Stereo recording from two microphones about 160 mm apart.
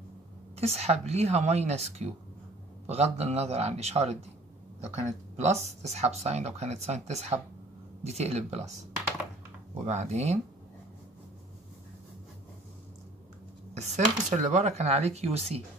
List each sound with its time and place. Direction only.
0.6 s a woman's voice: 40° right (ahead or behind)
9.8 s speech: 45° right (ahead or behind)
13.7 s speech: 45° right (ahead or behind)